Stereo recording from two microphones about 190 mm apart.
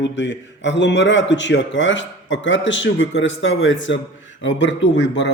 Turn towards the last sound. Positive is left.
turn(degrees=70)  # may be behind; listen again after turning